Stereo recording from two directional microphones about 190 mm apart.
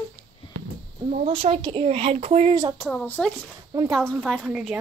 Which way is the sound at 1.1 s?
30° right (ahead or behind).